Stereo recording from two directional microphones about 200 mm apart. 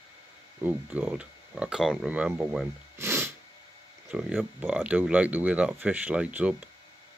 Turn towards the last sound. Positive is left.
turn(degrees=-5)  # may be behind; listen again after turning